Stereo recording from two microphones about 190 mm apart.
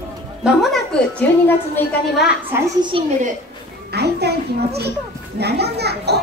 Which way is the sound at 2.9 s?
25° right (ahead or behind).